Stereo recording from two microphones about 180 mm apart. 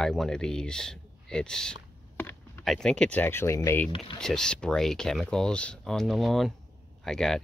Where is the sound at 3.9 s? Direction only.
30° left (ahead or behind).